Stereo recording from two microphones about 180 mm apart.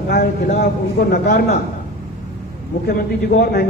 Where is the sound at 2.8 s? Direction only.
60° left (ahead or behind).